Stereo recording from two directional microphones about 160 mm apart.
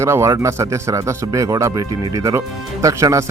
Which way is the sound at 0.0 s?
15° right (ahead or behind).